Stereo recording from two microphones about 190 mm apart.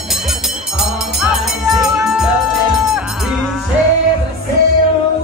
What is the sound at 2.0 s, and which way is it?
Music, centre (ahead or behind).